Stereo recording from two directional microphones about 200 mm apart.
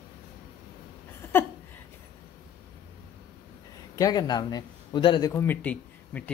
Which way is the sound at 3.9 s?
20° left (ahead or behind).